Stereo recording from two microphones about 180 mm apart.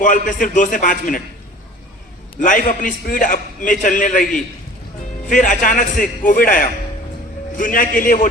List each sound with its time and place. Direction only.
0.0 s a man's voice: 45° left (ahead or behind)
2.4 s a man's voice: 50° left (ahead or behind)